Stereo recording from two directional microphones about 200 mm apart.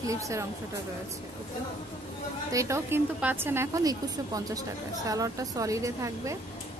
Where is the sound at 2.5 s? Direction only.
15° right (ahead or behind).